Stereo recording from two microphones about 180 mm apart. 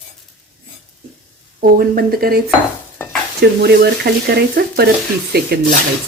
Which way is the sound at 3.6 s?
60° right (ahead or behind).